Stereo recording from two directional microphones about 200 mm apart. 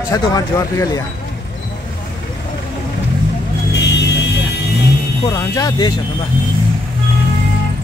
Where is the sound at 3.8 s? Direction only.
60° left (ahead or behind).